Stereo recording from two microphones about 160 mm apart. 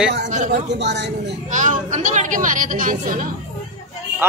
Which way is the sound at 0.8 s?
90° right.